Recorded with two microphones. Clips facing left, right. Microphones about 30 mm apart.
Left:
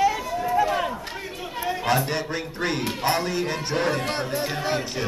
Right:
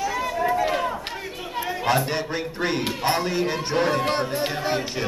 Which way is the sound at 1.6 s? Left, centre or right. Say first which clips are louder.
Even; centre.